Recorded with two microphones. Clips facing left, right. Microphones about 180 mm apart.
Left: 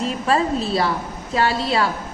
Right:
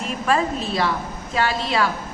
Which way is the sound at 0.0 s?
35° left (ahead or behind).